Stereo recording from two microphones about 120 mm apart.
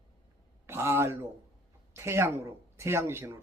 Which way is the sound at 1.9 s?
20° right (ahead or behind).